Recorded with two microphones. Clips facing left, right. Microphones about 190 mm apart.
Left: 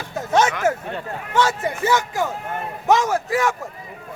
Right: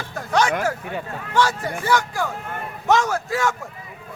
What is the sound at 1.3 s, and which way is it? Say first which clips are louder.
A man's voice: left 1 dB; 20° left (ahead or behind).